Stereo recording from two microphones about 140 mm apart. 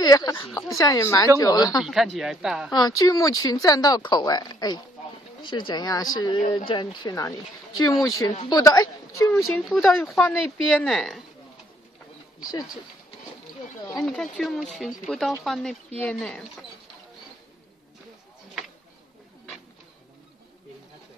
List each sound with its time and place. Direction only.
0.0 s speech: 25° left (ahead or behind)
1.8 s speech: centre (ahead or behind)
2.7 s speech: 30° left (ahead or behind)
9.4 s speech: 5° right (ahead or behind)
13.9 s speech: centre (ahead or behind)